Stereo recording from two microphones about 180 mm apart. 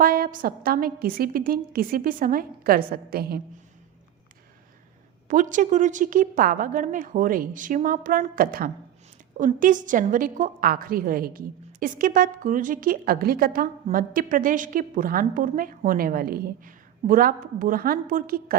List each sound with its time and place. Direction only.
0.0 s a woman's voice: 50° right (ahead or behind)
5.3 s a woman's voice: 45° right (ahead or behind)